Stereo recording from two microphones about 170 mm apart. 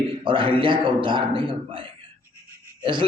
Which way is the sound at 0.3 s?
30° right (ahead or behind).